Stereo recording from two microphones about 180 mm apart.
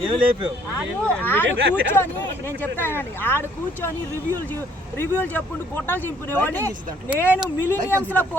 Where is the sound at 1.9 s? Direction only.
10° left (ahead or behind).